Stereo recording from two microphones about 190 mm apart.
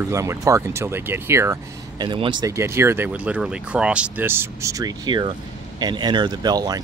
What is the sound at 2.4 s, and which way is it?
Speech, 15° right (ahead or behind).